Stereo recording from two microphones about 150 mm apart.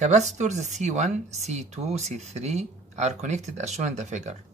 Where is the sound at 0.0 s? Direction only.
50° right (ahead or behind).